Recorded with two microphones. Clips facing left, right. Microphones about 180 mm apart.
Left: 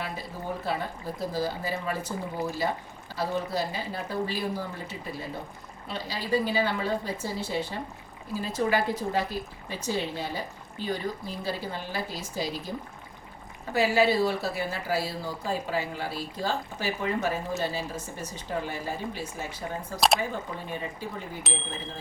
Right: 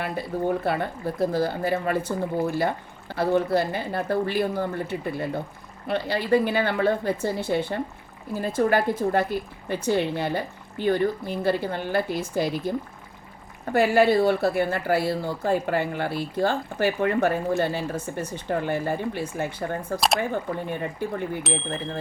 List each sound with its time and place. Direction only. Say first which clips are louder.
0.0 s a woman's voice: right 9 dB; 60° right (ahead or behind)
21.5 s speech: right 5 dB; centre (ahead or behind)